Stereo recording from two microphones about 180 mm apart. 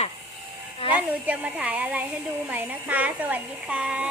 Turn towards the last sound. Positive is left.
turn(degrees=-5)  # may be behind; listen again after turning